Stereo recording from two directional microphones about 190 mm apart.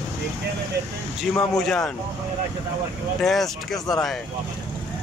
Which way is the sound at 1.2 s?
Centre (ahead or behind).